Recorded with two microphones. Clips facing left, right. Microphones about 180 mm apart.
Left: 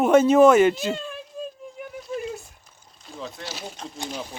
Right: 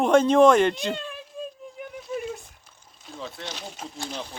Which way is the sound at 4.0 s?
15° left (ahead or behind).